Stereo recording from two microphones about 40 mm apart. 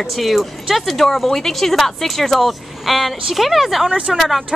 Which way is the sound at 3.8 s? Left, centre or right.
Right.